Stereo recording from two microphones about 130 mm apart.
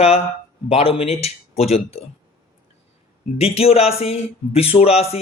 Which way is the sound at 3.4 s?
50° left (ahead or behind).